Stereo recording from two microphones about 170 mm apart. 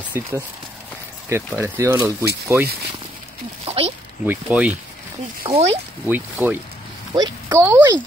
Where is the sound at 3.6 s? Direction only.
35° right (ahead or behind).